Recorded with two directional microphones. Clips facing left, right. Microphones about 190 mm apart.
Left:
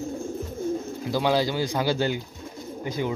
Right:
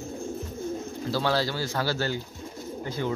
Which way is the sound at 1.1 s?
15° left (ahead or behind).